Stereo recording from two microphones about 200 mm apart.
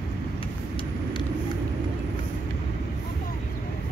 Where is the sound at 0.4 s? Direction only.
25° left (ahead or behind).